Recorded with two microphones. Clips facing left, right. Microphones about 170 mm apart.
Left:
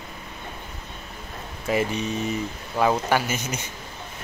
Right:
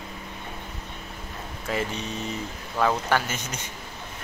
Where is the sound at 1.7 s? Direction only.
10° left (ahead or behind).